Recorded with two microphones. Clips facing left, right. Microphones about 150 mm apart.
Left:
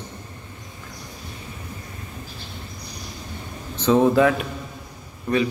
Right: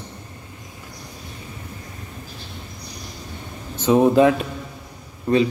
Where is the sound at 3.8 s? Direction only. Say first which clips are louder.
Right 2 dB; 15° right (ahead or behind).